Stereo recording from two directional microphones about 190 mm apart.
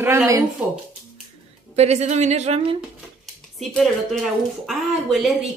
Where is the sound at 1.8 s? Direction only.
35° right (ahead or behind).